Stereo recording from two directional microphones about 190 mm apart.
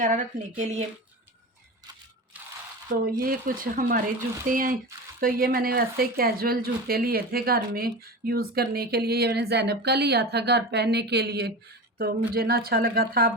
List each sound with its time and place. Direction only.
0.0 s speech: 40° right (ahead or behind)
2.9 s speech: 45° right (ahead or behind)